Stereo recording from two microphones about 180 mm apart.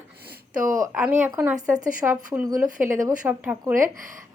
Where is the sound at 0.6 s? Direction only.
50° right (ahead or behind).